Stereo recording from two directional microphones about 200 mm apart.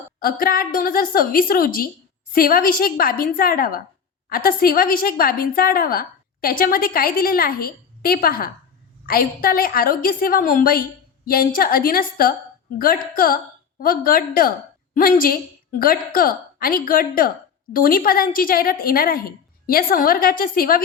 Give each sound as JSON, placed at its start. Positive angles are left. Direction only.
{"t": 0.2, "sound": "a woman's voice", "side_deg": 45}